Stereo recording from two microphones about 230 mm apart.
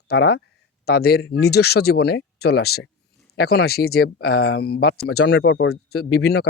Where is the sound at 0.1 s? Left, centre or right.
Left.